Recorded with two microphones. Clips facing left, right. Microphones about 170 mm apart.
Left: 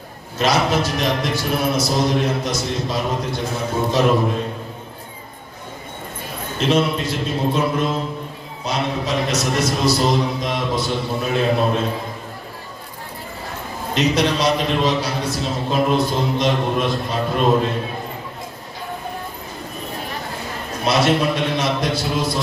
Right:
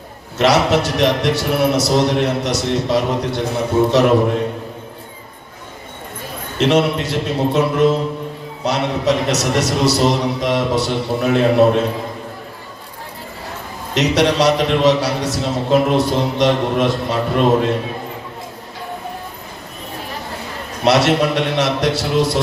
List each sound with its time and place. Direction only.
0.3 s a man's voice: 75° right (ahead or behind)
6.6 s a man's voice: 70° right (ahead or behind)
13.9 s a man's voice: 75° right (ahead or behind)
20.8 s a man's voice: 75° right (ahead or behind)